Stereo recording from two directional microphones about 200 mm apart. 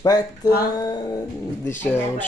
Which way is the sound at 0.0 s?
20° left (ahead or behind).